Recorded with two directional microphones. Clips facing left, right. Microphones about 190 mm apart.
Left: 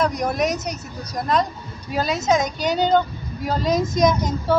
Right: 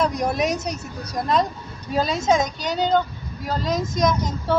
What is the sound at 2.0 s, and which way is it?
A woman's voice, 5° left (ahead or behind).